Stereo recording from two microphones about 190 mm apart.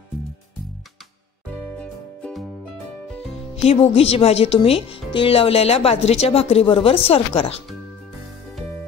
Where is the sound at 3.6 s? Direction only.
30° left (ahead or behind).